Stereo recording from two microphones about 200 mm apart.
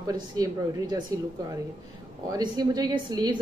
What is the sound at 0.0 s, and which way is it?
A woman's voice, 20° right (ahead or behind).